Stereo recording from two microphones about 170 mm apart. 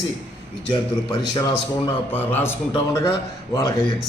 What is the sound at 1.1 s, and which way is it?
Speech, 25° left (ahead or behind).